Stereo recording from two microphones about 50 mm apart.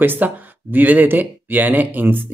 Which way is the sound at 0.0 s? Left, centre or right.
Right.